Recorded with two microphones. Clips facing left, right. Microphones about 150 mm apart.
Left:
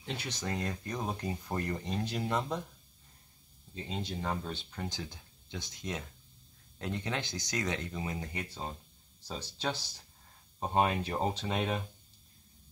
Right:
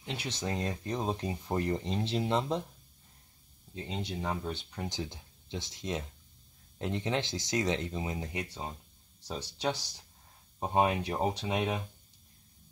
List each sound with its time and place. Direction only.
0.0 s speech: 20° right (ahead or behind)
3.7 s speech: 15° right (ahead or behind)